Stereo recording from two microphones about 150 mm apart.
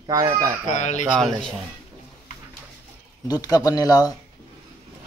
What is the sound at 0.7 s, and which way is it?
Speech, 55° left (ahead or behind).